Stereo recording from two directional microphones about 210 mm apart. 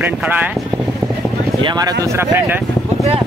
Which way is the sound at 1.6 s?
20° right (ahead or behind).